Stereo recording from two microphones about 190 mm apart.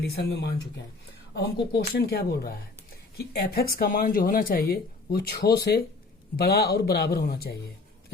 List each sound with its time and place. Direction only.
0.0 s speech: 60° left (ahead or behind)
1.7 s speech: 55° left (ahead or behind)